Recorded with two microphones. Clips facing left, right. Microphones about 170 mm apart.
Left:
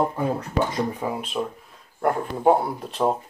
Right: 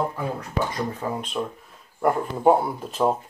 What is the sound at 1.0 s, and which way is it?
Speech, 10° left (ahead or behind).